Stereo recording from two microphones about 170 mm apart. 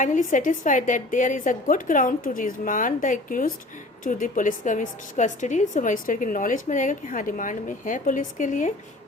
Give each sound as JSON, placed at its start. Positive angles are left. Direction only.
{"t": 0.0, "sound": "a woman's voice", "side_deg": 50}